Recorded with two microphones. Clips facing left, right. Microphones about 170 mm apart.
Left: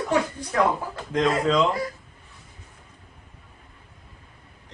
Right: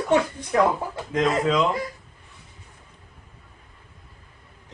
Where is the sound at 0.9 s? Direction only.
Centre (ahead or behind).